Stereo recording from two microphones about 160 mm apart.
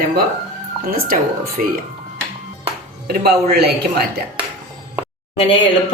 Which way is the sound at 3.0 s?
80° right.